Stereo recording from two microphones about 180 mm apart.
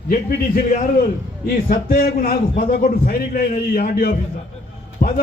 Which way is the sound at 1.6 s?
55° left (ahead or behind).